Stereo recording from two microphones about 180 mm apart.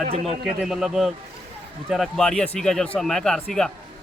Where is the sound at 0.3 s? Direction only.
5° right (ahead or behind).